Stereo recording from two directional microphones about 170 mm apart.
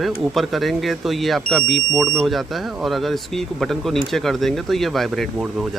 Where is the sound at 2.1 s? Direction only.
Centre (ahead or behind).